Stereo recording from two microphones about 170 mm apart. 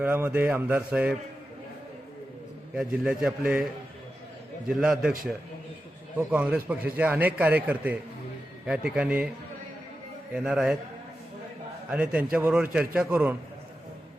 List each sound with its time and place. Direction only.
0.0 s a man's voice: 10° right (ahead or behind)
2.7 s a man's voice: 5° right (ahead or behind)
4.8 s a man's voice: 5° right (ahead or behind)
6.1 s a man's voice: 10° right (ahead or behind)
10.3 s a man's voice: 5° right (ahead or behind)
11.9 s a man's voice: 5° right (ahead or behind)